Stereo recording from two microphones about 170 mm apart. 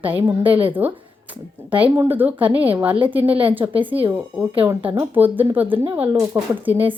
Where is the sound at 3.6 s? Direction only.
25° right (ahead or behind).